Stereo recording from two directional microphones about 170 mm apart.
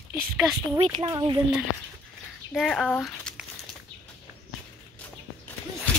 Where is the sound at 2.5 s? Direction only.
Centre (ahead or behind).